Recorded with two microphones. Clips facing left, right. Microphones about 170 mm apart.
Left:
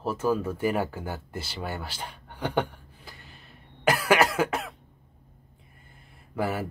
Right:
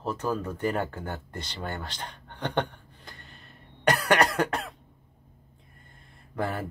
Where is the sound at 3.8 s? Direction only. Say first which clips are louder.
Left 1 dB; centre (ahead or behind).